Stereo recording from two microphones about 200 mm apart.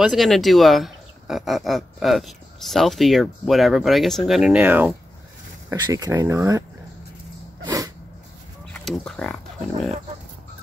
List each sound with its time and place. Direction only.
0.0 s speech: centre (ahead or behind)
5.7 s speech: 20° right (ahead or behind)
7.6 s a sound: 20° right (ahead or behind)
8.8 s speech: centre (ahead or behind)